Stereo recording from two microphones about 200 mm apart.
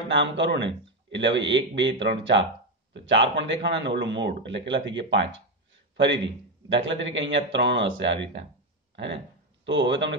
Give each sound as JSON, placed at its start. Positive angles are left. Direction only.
{"t": 0.1, "sound": "a man's voice", "side_deg": -65}